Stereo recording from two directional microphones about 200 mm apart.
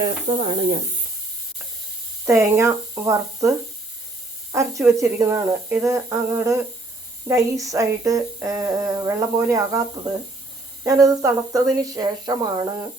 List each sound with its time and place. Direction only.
0.0 s speech: 25° right (ahead or behind)
2.2 s speech: 15° right (ahead or behind)
4.5 s speech: 15° right (ahead or behind)
10.8 s speech: 15° right (ahead or behind)